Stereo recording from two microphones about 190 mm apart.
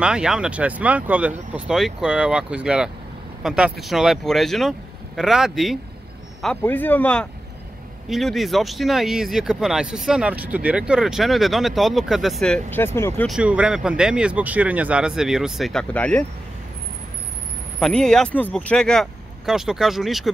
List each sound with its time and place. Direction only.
0.0 s speech: 5° right (ahead or behind); by 13.3 s 10° left (ahead or behind)
13.3 s speech: 5° right (ahead or behind)
17.7 s speech: 5° left (ahead or behind)